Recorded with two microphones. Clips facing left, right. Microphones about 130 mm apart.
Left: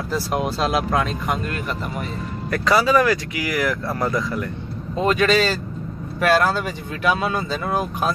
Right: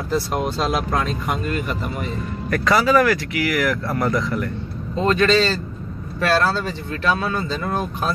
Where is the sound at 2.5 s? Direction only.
15° left (ahead or behind).